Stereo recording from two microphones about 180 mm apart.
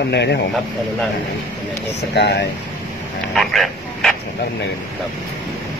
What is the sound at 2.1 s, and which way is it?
Speech, 70° left (ahead or behind).